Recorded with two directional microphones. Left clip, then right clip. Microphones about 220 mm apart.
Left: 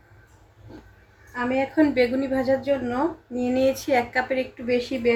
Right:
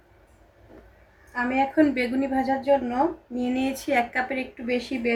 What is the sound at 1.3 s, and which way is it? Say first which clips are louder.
A woman's voice: right 1 dB; 20° right (ahead or behind).